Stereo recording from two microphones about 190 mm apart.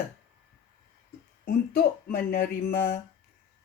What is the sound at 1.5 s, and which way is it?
A woman's voice, 50° left (ahead or behind).